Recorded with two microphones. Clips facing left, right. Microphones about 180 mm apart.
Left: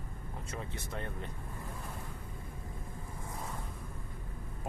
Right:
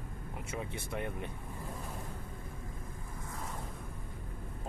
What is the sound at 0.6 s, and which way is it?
Speech, 15° right (ahead or behind).